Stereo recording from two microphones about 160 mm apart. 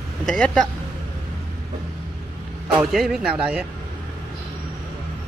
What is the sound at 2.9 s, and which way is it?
Speech, centre (ahead or behind).